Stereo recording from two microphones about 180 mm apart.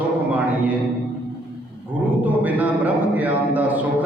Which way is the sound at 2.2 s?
10° right (ahead or behind).